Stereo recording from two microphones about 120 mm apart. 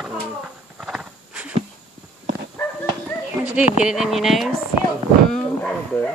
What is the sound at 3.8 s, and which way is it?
Speech, 5° right (ahead or behind).